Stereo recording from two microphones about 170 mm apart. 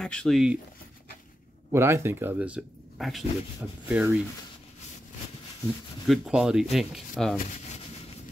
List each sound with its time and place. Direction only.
0.0 s speech: 5° left (ahead or behind)
1.7 s speech: 15° right (ahead or behind)
6.0 s speech: 5° right (ahead or behind)